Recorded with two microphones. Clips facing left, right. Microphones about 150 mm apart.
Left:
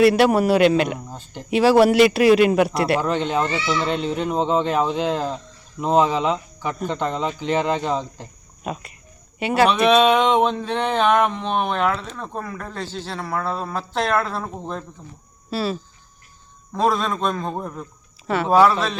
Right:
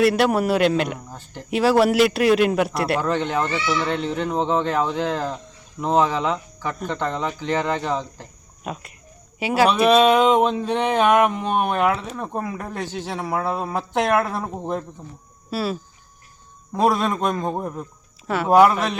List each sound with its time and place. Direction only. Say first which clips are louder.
0.0 s speech: left 3 dB; centre (ahead or behind)
1.1 s speech: left 2 dB; 15° left (ahead or behind)
1.5 s speech: left 3 dB; centre (ahead or behind)
3.0 s speech: left 1 dB; 15° left (ahead or behind)
8.6 s speech: left 2 dB; centre (ahead or behind)
15.4 s speech: left 1 dB; 5° right (ahead or behind)
18.3 s speech: left 1 dB; centre (ahead or behind)
18.5 s speech: right 1 dB; 15° right (ahead or behind)